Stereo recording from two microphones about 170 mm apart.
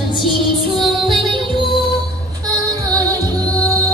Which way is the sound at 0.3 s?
Centre (ahead or behind).